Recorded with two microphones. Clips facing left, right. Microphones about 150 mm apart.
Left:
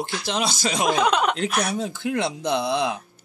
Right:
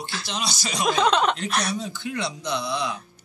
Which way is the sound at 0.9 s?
10° left (ahead or behind).